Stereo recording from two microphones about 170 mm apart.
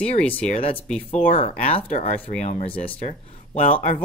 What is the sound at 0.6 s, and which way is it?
Speech, 35° left (ahead or behind).